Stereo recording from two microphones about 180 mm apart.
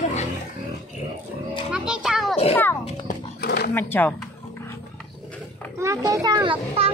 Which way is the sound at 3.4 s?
65° left (ahead or behind).